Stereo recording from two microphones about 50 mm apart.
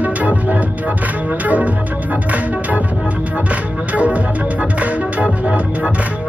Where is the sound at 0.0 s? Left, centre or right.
Right.